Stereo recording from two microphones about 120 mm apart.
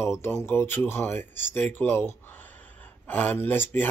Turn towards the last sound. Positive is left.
turn(degrees=20)  # may be behind; listen again after turning